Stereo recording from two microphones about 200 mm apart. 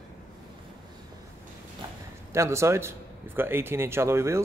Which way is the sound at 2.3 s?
15° right (ahead or behind).